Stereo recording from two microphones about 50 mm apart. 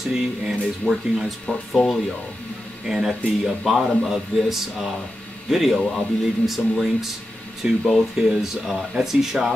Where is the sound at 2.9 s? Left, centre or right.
Centre.